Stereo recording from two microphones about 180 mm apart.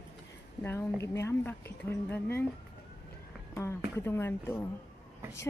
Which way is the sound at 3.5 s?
15° left (ahead or behind).